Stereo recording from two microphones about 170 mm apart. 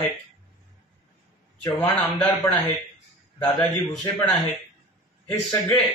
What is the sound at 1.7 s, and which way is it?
A man's voice, 10° left (ahead or behind).